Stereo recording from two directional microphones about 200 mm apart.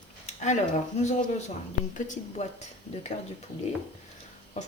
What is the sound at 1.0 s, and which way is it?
Speech, 35° left (ahead or behind).